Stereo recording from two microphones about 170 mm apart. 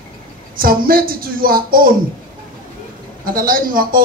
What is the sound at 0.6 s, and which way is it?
Speech, 60° right (ahead or behind).